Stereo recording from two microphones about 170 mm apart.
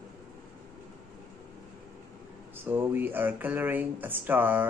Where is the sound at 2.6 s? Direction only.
10° right (ahead or behind).